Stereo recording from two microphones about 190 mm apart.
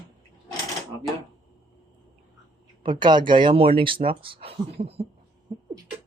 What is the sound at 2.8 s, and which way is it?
Speech, 25° right (ahead or behind).